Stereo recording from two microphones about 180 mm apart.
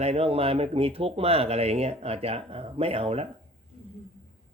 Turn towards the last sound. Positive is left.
turn(degrees=-35)  # may be behind; listen again after turning